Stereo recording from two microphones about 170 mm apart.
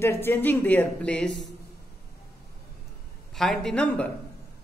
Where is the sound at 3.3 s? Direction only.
Centre (ahead or behind).